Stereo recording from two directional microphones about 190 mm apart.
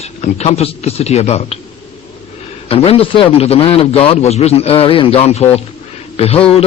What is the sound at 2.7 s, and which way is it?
A man's voice, 30° left (ahead or behind).